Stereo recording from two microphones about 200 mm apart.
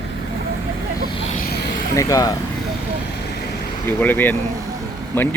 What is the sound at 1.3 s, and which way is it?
Vehicle, 50° left (ahead or behind).